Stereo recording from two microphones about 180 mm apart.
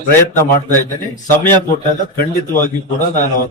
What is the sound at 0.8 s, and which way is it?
Speech, 15° left (ahead or behind).